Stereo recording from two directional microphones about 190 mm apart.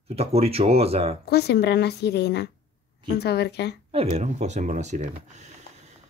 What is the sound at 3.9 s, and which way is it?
Speech, 35° right (ahead or behind).